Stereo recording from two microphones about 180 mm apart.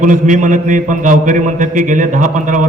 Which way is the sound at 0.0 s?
45° right (ahead or behind).